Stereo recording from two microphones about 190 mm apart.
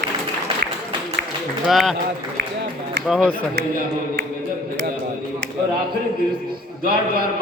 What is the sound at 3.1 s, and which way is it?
Speech, 5° left (ahead or behind).